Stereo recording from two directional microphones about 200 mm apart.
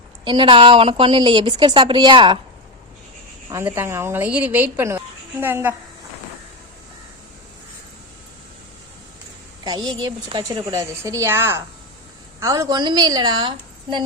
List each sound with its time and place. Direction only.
0.3 s a woman's voice: 25° right (ahead or behind)
3.5 s a woman's voice: 10° right (ahead or behind)
9.6 s a woman's voice: 20° right (ahead or behind)